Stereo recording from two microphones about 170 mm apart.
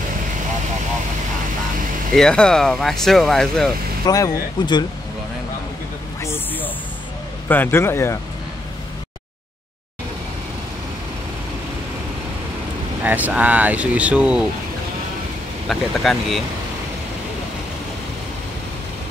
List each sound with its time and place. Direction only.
2.1 s speech: 5° left (ahead or behind)
4.0 s speech: 20° left (ahead or behind)
6.2 s a sound: 15° left (ahead or behind)
7.4 s a man's voice: 10° left (ahead or behind)
13.0 s speech: 10° right (ahead or behind)
15.7 s speech: centre (ahead or behind)